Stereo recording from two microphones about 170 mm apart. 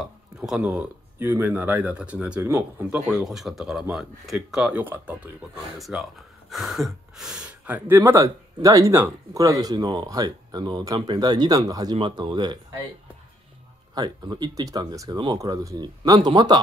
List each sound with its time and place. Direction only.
0.0 s speech: 5° right (ahead or behind)
3.3 s speech: centre (ahead or behind); by 12.5 s 25° right (ahead or behind)
13.9 s speech: 25° right (ahead or behind)